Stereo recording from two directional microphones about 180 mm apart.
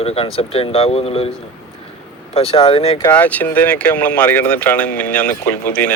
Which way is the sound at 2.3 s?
30° left (ahead or behind).